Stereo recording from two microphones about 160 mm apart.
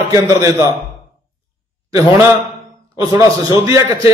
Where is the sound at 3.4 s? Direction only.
20° right (ahead or behind).